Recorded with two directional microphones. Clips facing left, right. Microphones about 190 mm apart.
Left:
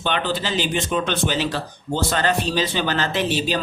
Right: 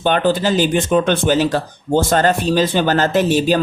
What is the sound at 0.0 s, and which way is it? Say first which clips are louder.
Speech: right 8 dB; 45° right (ahead or behind).